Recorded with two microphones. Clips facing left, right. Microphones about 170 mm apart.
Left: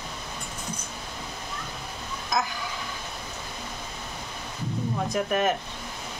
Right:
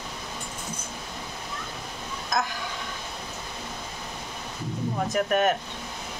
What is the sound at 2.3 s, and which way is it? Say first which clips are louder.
Speech: even; centre (ahead or behind).